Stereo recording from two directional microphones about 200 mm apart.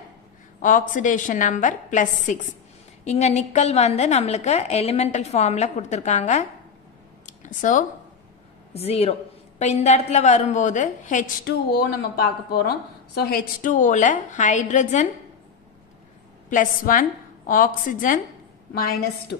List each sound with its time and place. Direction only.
0.6 s a woman's voice: 40° left (ahead or behind)
7.2 s a sound: 40° left (ahead or behind)
8.7 s a woman's voice: 30° left (ahead or behind)
12.4 s a woman's voice: 50° left (ahead or behind)
16.4 s a woman's voice: 40° left (ahead or behind)